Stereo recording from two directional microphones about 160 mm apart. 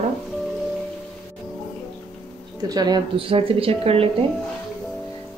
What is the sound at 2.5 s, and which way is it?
Speech, 25° right (ahead or behind).